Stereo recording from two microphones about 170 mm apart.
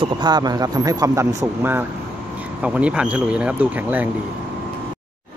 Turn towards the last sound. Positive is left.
turn(degrees=-10)  # may be behind; listen again after turning